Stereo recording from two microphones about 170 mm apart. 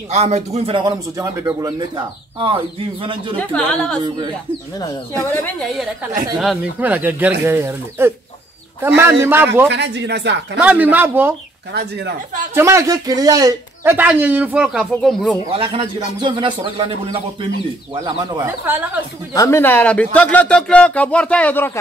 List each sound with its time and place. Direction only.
0.1 s a man's voice: 40° right (ahead or behind)
3.3 s speech: 5° left (ahead or behind)
5.2 s speech: 15° left (ahead or behind)
6.3 s speech: centre (ahead or behind)
9.7 s speech: 90° right
10.6 s speech: 10° right (ahead or behind)
11.7 s speech: 80° right
12.5 s speech: 15° right (ahead or behind); by 15.3 s 5° left (ahead or behind)
15.5 s speech: 30° right (ahead or behind)
18.4 s speech: 10° right (ahead or behind)
19.3 s speech: 15° left (ahead or behind)